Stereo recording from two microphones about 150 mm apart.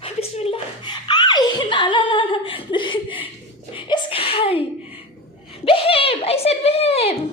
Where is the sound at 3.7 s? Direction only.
35° left (ahead or behind).